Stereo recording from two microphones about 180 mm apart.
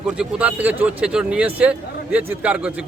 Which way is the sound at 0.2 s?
10° right (ahead or behind).